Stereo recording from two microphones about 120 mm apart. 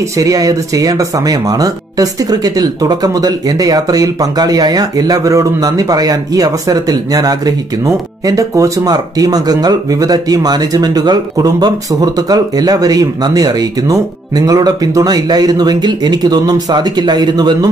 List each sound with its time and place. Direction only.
0.2 s speech: 30° right (ahead or behind)